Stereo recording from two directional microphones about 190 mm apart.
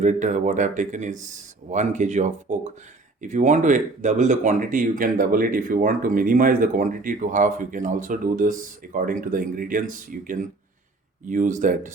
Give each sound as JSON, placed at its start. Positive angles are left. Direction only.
{"t": 0.0, "sound": "speech", "side_deg": -40}